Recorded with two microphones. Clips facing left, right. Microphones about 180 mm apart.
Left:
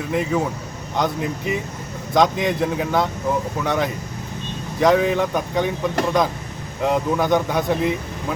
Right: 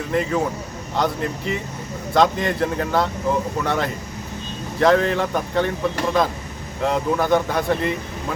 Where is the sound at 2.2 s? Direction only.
15° left (ahead or behind).